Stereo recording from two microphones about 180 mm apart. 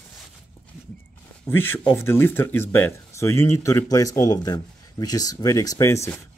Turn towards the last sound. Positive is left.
turn(degrees=15)  # may be behind; listen again after turning